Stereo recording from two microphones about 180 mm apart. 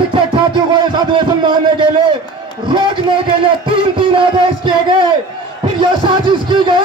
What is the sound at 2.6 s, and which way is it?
A man's voice, 25° right (ahead or behind).